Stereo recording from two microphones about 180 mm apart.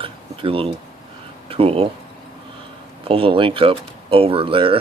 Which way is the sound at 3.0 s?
30° right (ahead or behind).